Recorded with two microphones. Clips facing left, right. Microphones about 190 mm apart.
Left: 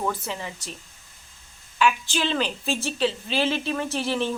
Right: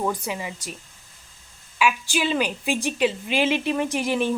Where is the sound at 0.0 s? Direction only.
10° right (ahead or behind).